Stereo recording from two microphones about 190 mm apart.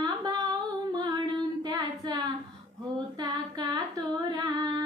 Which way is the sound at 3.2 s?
20° right (ahead or behind).